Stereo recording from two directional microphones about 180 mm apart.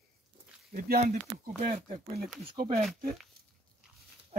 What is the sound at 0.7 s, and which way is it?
Speech, 50° right (ahead or behind).